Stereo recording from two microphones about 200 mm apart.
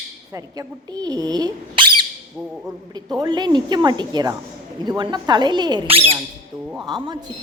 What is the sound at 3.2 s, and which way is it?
Speech, 20° right (ahead or behind).